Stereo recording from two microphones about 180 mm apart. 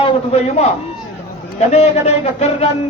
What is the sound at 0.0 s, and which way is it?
A man's voice, 40° left (ahead or behind).